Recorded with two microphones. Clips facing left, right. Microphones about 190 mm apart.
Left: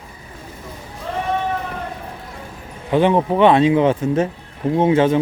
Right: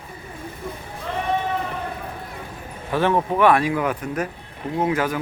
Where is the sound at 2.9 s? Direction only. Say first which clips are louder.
Left 5 dB; 20° left (ahead or behind).